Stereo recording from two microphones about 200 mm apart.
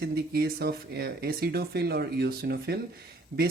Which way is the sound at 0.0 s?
50° right (ahead or behind).